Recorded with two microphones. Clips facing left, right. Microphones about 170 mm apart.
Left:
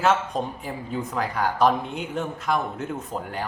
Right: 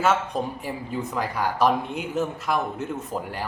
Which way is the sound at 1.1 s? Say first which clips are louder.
Left 1 dB; 5° right (ahead or behind).